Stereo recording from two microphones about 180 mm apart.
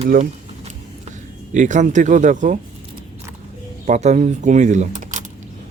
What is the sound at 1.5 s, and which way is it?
Speech, 45° right (ahead or behind).